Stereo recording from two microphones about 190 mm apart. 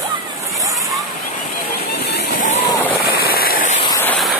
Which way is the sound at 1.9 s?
60° left (ahead or behind).